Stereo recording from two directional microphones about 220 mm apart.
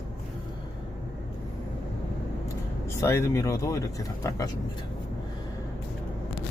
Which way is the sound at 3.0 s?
15° left (ahead or behind).